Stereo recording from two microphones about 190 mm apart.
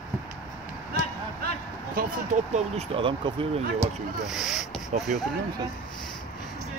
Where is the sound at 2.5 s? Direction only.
35° right (ahead or behind).